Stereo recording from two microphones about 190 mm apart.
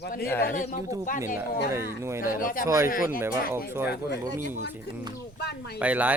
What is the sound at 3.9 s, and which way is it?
Speech, 65° left (ahead or behind).